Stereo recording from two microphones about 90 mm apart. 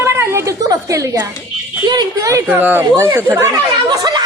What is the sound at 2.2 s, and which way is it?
Speech, 35° right (ahead or behind).